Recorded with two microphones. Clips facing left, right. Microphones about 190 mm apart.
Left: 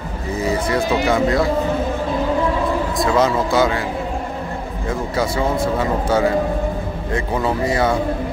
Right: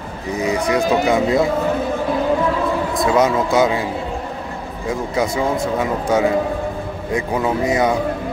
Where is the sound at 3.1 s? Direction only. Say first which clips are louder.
Right 1 dB; 20° right (ahead or behind).